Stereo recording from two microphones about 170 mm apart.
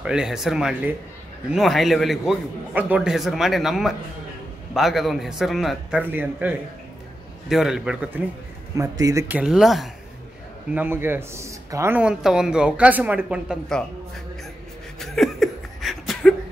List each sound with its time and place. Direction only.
0.0 s a man's voice: 5° right (ahead or behind)
8.7 s speech: 20° right (ahead or behind)
9.3 s a man's voice: 5° right (ahead or behind)
10.7 s a man's voice: 10° right (ahead or behind)
15.0 s laughter: centre (ahead or behind)